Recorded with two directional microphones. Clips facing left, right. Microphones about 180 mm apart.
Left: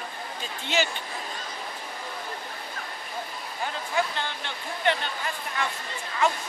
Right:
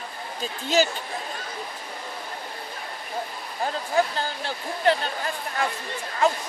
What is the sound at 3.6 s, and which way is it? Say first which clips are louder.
Speech: right 5 dB; 35° right (ahead or behind).